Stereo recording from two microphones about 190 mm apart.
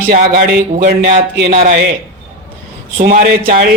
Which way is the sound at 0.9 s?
60° right (ahead or behind).